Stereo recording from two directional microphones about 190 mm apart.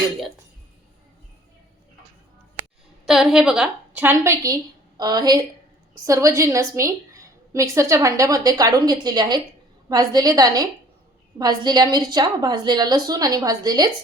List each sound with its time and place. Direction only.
3.1 s a woman's voice: 5° right (ahead or behind); by 13.9 s 20° right (ahead or behind)